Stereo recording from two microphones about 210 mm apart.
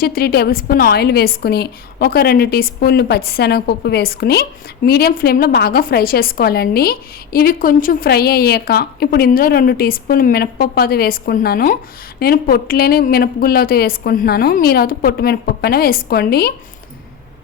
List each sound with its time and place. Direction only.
0.0 s a woman's voice: 45° left (ahead or behind)